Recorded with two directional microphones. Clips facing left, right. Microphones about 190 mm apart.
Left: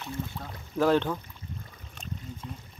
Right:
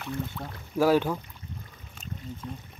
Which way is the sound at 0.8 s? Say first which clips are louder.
Right 1 dB; 10° right (ahead or behind).